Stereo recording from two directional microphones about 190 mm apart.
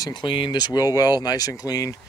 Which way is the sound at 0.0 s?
25° left (ahead or behind).